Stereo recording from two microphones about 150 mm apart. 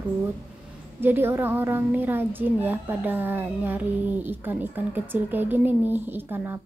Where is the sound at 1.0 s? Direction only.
15° right (ahead or behind).